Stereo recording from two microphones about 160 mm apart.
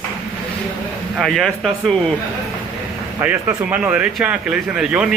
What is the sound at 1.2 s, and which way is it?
Speech, centre (ahead or behind).